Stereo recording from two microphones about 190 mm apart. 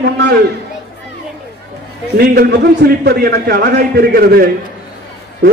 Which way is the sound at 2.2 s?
60° right (ahead or behind).